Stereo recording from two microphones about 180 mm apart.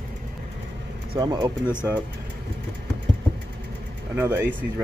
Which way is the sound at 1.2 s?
25° right (ahead or behind).